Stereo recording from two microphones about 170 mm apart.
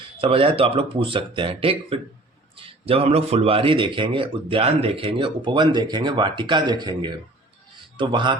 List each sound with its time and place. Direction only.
0.2 s speech: 35° right (ahead or behind)